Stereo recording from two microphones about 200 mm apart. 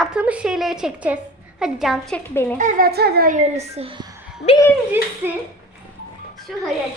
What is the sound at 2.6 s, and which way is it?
A woman's voice, 45° right (ahead or behind).